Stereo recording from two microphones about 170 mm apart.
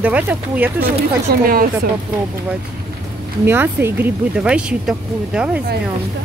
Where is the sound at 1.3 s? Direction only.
60° right (ahead or behind).